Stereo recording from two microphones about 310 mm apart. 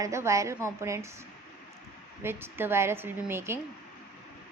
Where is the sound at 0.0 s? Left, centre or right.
Centre.